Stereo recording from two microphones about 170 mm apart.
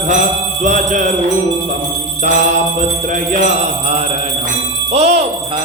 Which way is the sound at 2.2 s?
45° right (ahead or behind).